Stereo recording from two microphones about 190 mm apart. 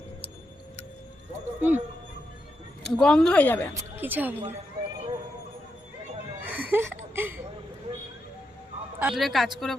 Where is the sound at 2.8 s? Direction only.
5° left (ahead or behind).